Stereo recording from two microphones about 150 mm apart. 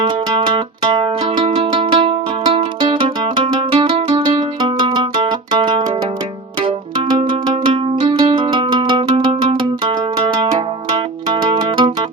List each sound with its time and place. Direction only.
0.0 s music: 30° right (ahead or behind)
7.3 s music: 30° right (ahead or behind)
10.9 s zither: 30° right (ahead or behind)